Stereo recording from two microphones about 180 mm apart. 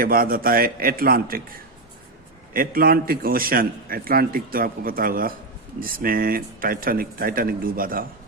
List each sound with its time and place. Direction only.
0.0 s a man's voice: 55° right (ahead or behind)
2.5 s a man's voice: 55° right (ahead or behind)